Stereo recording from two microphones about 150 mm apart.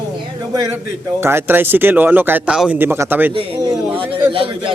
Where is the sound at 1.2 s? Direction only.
15° right (ahead or behind).